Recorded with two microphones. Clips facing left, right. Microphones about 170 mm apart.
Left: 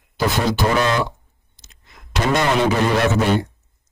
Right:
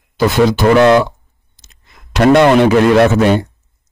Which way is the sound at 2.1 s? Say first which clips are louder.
Right 10 dB; 65° right (ahead or behind).